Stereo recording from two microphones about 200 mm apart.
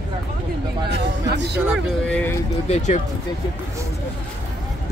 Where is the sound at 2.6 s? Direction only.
35° left (ahead or behind).